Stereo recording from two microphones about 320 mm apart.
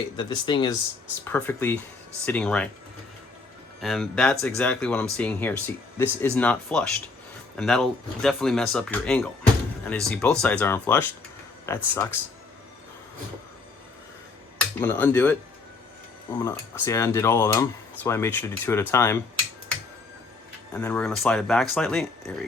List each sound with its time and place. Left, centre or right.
0.2 s speech: centre
3.8 s speech: centre
14.8 s speech: centre
16.4 s speech: centre
20.7 s speech: centre